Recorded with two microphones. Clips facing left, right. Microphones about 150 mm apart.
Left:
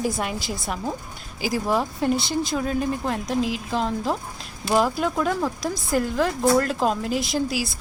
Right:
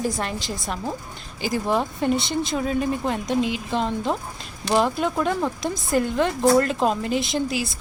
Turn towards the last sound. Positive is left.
turn(degrees=5)  # may be behind; listen again after turning